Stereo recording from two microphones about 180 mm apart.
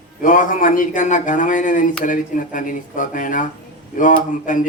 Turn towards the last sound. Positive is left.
turn(degrees=45)  # may be behind; listen again after turning